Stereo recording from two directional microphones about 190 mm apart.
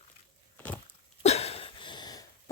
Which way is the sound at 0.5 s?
10° left (ahead or behind).